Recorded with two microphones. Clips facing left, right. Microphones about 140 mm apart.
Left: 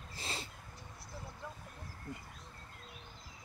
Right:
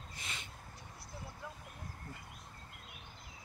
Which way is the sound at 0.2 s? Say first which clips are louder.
Left 6 dB; 35° left (ahead or behind).